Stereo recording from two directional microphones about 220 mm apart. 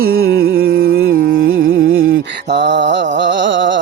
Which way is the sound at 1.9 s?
65° right (ahead or behind).